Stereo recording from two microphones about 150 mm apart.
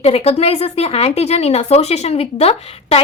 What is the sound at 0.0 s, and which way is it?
Speech, 40° left (ahead or behind).